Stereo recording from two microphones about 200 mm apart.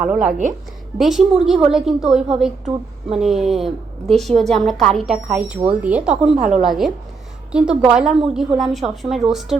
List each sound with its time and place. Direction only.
0.0 s a woman's voice: 5° right (ahead or behind)